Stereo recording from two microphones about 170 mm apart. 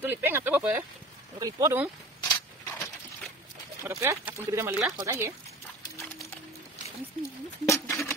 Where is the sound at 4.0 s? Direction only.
15° right (ahead or behind).